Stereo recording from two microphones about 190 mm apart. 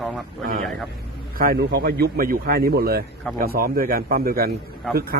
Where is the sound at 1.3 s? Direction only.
50° right (ahead or behind).